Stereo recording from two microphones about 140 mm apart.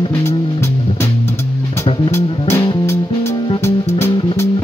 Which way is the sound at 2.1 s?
20° left (ahead or behind).